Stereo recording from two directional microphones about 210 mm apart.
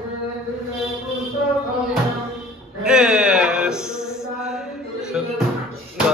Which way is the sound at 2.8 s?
5° right (ahead or behind).